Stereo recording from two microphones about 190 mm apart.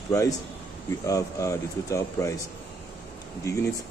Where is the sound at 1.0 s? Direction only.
15° left (ahead or behind).